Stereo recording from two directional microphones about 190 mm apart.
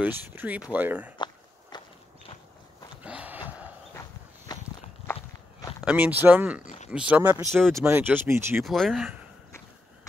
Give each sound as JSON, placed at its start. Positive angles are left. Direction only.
{"t": 0.0, "sound": "speech", "side_deg": -10}
{"t": 1.1, "sound": "a sound", "side_deg": 25}
{"t": 3.0, "sound": "a sound", "side_deg": -5}
{"t": 4.5, "sound": "walk", "side_deg": 20}
{"t": 5.9, "sound": "speech", "side_deg": -10}
{"t": 8.6, "sound": "speech", "side_deg": 0}